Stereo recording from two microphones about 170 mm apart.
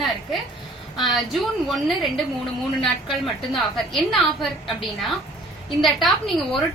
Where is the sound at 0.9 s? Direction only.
Centre (ahead or behind).